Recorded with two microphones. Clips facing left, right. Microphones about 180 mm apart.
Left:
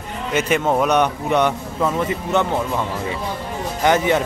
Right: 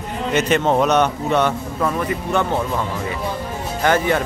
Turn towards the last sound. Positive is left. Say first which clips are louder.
# left 1 dB
turn(degrees=20)  # may be behind; listen again after turning